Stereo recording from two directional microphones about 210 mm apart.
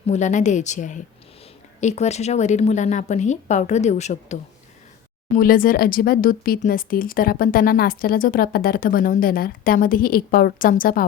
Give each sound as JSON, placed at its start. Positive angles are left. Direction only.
{"t": 0.1, "sound": "a woman's voice", "side_deg": 35}